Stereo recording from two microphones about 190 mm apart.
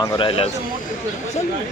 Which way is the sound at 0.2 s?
30° left (ahead or behind).